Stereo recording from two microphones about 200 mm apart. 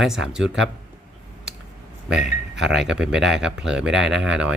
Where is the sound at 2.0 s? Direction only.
5° right (ahead or behind).